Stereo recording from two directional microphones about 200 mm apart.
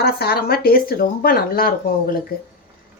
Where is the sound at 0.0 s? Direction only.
50° left (ahead or behind).